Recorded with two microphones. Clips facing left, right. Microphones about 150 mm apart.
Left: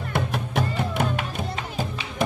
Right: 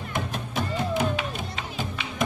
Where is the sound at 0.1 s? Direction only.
65° left (ahead or behind).